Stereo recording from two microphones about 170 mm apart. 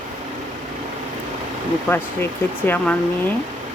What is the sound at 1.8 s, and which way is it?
Speech, 10° left (ahead or behind).